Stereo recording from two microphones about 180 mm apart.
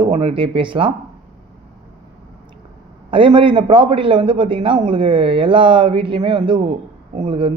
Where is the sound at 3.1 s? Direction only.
30° right (ahead or behind).